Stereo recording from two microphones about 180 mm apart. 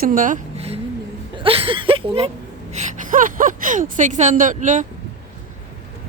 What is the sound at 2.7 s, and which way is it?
Speech, 45° right (ahead or behind).